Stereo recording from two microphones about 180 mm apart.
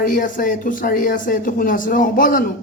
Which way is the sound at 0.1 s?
50° left (ahead or behind).